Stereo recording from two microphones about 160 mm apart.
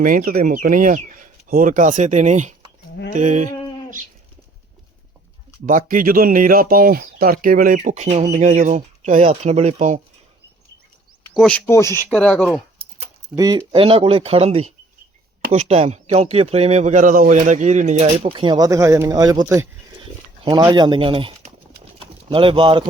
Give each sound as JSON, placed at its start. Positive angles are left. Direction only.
{"t": 0.0, "sound": "speech", "side_deg": -60}
{"t": 5.6, "sound": "speech", "side_deg": -60}
{"t": 11.3, "sound": "speech", "side_deg": 5}
{"t": 11.6, "sound": "speech", "side_deg": 15}
{"t": 12.0, "sound": "speech", "side_deg": 5}
{"t": 13.3, "sound": "speech", "side_deg": -20}
{"t": 13.7, "sound": "speech", "side_deg": -35}
{"t": 18.0, "sound": "speech", "side_deg": -30}
{"t": 21.9, "sound": "bird", "side_deg": -35}